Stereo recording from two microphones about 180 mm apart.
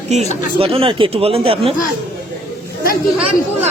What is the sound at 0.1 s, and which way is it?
Speech, 40° right (ahead or behind).